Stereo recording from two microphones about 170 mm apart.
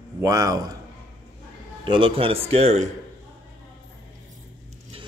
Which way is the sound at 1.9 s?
30° right (ahead or behind).